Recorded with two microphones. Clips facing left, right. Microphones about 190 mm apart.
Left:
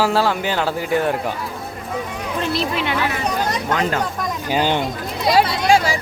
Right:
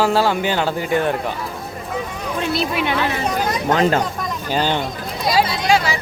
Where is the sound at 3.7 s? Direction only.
30° right (ahead or behind).